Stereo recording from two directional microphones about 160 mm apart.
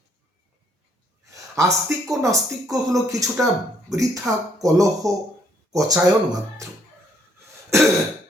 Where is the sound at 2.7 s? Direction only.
20° right (ahead or behind).